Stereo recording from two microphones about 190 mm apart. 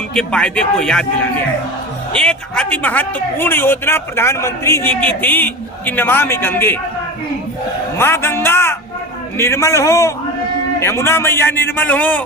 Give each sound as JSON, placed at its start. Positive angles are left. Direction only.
{"t": 0.1, "sound": "a man's voice", "side_deg": 5}
{"t": 2.1, "sound": "a man's voice", "side_deg": 5}
{"t": 7.9, "sound": "a man's voice", "side_deg": 10}